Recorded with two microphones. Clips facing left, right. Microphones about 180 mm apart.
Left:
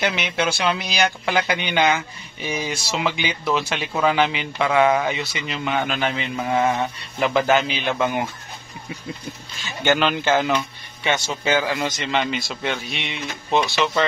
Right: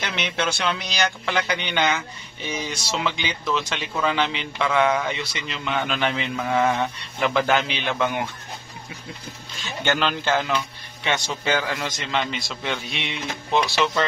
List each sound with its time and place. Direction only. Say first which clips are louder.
0.0 s speech: left 4 dB; 10° left (ahead or behind)
2.7 s speech: left 2 dB; 50° left (ahead or behind)
3.6 s speech: left 4 dB; 10° left (ahead or behind)
4.6 s speech: left 3 dB; 50° left (ahead or behind)
5.0 s a man's voice: left 3 dB; 5° left (ahead or behind)
5.5 s speech: left 2 dB; 50° left (ahead or behind)
5.9 s a man's voice: left 1 dB; centre (ahead or behind)
9.7 s a man's voice: left 4 dB; 5° left (ahead or behind)